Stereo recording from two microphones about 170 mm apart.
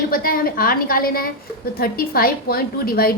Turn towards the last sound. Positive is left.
turn(degrees=60)  # may be behind; listen again after turning